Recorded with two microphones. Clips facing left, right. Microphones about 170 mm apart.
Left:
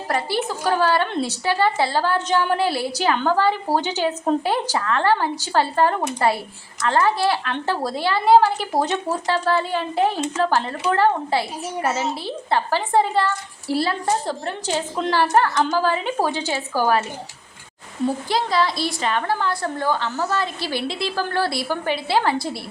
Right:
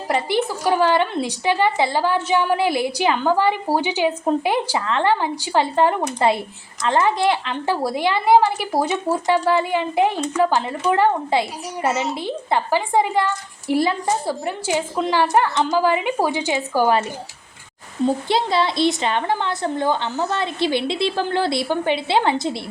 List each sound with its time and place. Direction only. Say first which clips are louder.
0.1 s a woman's voice: right 3 dB; 15° right (ahead or behind)
18.0 s a woman's voice: right 3 dB; 25° right (ahead or behind)